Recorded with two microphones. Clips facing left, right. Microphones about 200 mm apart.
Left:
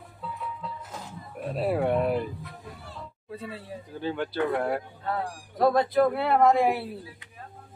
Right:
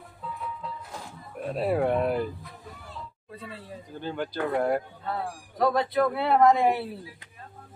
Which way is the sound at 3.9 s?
Centre (ahead or behind).